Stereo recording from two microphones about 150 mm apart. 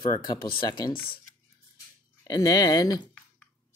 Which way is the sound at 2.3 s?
25° left (ahead or behind).